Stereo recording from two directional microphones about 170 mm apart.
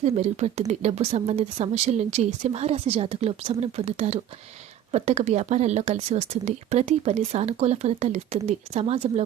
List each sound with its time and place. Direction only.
0.0 s a woman's voice: 40° right (ahead or behind)